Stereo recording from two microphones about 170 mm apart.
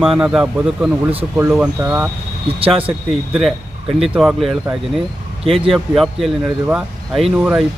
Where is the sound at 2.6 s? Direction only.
35° right (ahead or behind).